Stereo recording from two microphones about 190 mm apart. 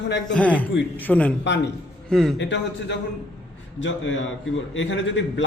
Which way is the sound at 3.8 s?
85° left.